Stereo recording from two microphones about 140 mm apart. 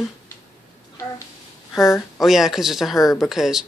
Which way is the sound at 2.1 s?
Centre (ahead or behind).